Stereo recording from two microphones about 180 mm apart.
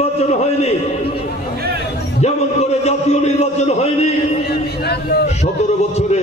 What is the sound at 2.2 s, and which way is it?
A man's voice, 40° left (ahead or behind).